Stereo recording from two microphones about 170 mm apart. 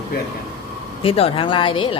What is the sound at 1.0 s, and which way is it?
Speech, 35° left (ahead or behind).